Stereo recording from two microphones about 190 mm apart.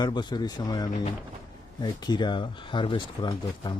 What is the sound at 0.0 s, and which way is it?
A man's voice, 25° left (ahead or behind).